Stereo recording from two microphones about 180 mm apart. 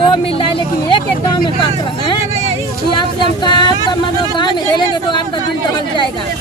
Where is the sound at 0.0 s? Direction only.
30° left (ahead or behind).